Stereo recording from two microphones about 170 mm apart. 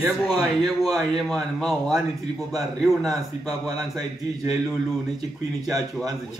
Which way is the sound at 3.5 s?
20° right (ahead or behind).